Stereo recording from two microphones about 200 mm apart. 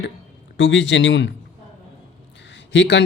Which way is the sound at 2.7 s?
65° left (ahead or behind).